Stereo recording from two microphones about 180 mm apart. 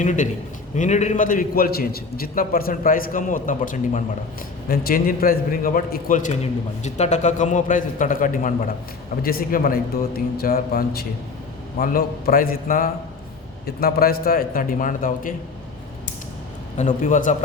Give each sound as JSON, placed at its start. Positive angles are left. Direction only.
{"t": 0.0, "sound": "a man's voice", "side_deg": 45}
{"t": 16.7, "sound": "a man's voice", "side_deg": 45}